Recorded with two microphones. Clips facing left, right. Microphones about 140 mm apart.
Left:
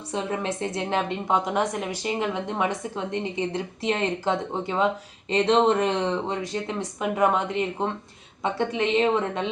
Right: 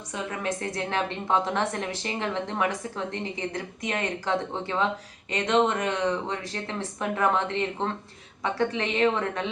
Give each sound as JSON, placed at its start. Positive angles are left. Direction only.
{"t": 0.1, "sound": "a woman's voice", "side_deg": 30}